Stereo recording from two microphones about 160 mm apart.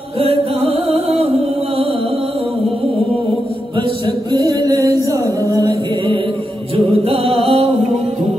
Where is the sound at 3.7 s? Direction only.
30° right (ahead or behind).